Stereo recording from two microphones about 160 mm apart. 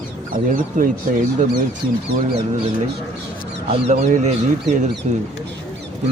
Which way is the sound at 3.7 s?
45° right (ahead or behind).